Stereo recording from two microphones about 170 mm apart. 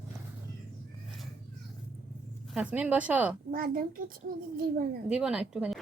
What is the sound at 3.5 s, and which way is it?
Speech, 60° right (ahead or behind).